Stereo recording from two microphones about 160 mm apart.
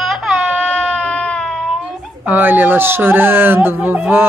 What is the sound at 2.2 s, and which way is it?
Speech, 10° right (ahead or behind).